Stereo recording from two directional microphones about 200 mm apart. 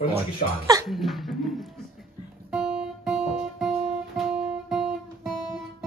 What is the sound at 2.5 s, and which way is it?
Guitar, 5° right (ahead or behind).